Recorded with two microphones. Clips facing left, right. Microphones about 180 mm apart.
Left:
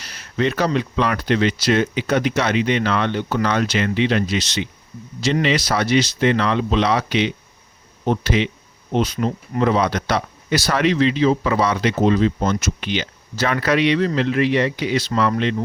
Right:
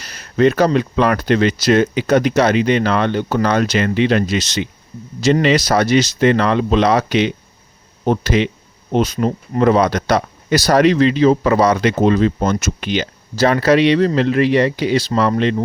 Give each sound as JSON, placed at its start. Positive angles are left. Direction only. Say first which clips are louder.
{"t": 0.0, "sound": "speech", "louder": "right 7 dB", "side_deg": -45}